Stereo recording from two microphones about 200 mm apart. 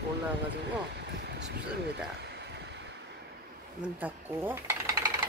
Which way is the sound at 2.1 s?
55° right (ahead or behind).